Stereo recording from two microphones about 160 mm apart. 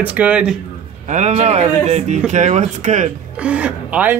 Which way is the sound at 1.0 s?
45° right (ahead or behind).